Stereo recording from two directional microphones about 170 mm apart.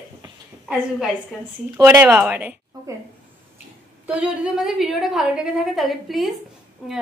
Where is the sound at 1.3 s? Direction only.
Centre (ahead or behind).